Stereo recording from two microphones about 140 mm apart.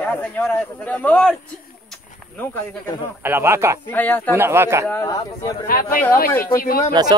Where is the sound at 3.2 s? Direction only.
15° right (ahead or behind).